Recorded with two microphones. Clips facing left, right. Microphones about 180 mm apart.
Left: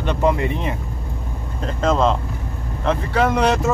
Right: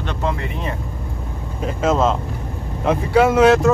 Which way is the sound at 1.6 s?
5° right (ahead or behind).